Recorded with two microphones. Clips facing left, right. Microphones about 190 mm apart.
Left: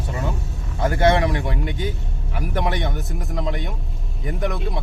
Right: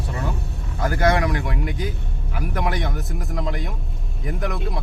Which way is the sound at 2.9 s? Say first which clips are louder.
Even; centre (ahead or behind).